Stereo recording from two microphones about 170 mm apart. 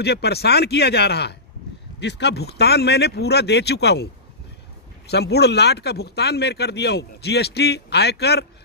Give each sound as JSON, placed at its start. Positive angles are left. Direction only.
{"t": 0.0, "sound": "speech", "side_deg": 75}
{"t": 2.0, "sound": "speech", "side_deg": 90}
{"t": 5.1, "sound": "speech", "side_deg": 75}